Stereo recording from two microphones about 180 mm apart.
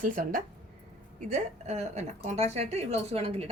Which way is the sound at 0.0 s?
50° right (ahead or behind).